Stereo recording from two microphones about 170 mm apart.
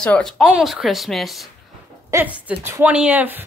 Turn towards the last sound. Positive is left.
turn(degrees=-10)  # may be behind; listen again after turning